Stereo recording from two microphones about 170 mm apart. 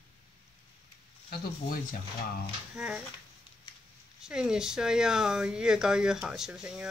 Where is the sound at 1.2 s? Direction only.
55° left (ahead or behind).